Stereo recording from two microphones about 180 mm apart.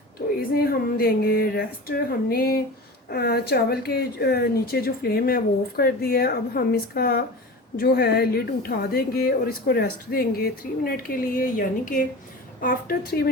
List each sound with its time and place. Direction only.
0.5 s speech: 55° left (ahead or behind)